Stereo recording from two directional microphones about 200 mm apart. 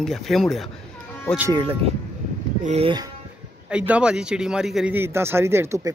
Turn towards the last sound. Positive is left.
turn(degrees=-15)  # may be behind; listen again after turning